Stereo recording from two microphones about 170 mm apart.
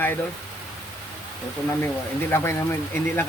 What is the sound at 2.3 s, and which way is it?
Speech, 15° left (ahead or behind).